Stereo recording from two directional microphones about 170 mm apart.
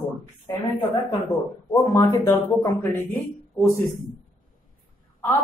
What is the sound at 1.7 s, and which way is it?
Speech, 15° left (ahead or behind).